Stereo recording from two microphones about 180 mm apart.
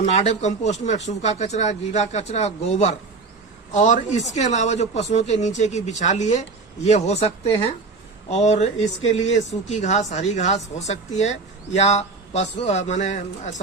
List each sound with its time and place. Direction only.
0.3 s a man's voice: 40° left (ahead or behind)
8.3 s speech: 40° left (ahead or behind)